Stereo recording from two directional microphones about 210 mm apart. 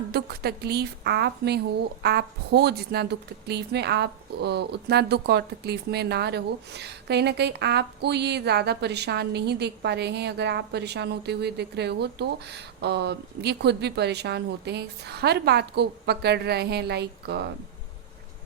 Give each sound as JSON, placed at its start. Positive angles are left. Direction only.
{"t": 0.1, "sound": "a woman's voice", "side_deg": -50}